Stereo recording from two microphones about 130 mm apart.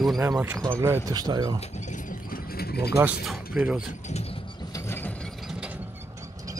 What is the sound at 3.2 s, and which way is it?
Speech, 5° right (ahead or behind).